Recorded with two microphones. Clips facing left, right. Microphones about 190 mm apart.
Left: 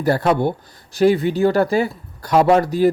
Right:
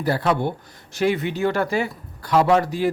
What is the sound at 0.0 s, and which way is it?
A man's voice, 45° left (ahead or behind).